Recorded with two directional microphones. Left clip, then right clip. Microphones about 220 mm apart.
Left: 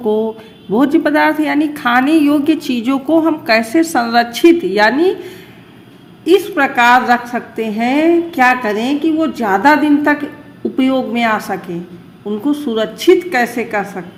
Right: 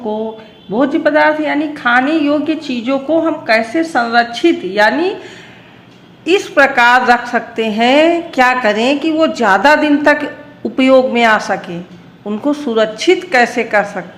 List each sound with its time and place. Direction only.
0.7 s a woman's voice: 20° left (ahead or behind); by 14.0 s 5° left (ahead or behind)